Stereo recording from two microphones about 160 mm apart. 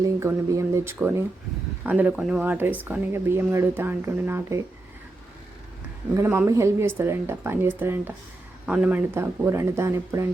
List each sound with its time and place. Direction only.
0.0 s speech: 20° right (ahead or behind)
6.1 s speech: 15° right (ahead or behind)